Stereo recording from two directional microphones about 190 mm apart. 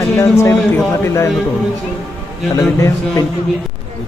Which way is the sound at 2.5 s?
15° left (ahead or behind).